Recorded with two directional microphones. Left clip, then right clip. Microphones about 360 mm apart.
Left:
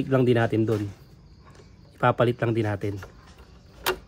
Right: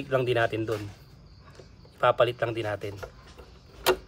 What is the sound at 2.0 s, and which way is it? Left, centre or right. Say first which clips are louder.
Speech: even; centre.